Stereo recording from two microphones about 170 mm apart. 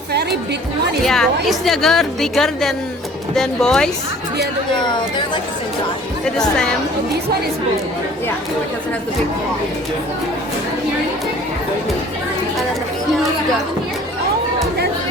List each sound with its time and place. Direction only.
0.1 s chatter: 75° right (ahead or behind)
1.0 s a woman's voice: centre (ahead or behind)
4.7 s speech: 25° left (ahead or behind)
6.3 s a woman's voice: 5° left (ahead or behind)